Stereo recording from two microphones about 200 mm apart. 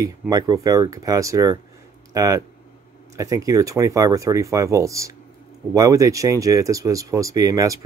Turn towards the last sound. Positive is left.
turn(degrees=-15)  # may be behind; listen again after turning